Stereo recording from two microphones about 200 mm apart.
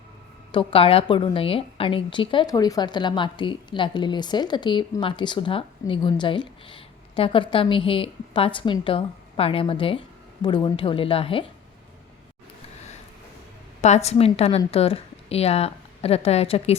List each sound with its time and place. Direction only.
0.5 s a woman's voice: 30° left (ahead or behind)
13.8 s a woman's voice: 35° left (ahead or behind)